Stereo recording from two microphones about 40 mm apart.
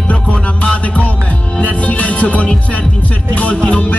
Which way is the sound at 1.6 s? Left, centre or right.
Left.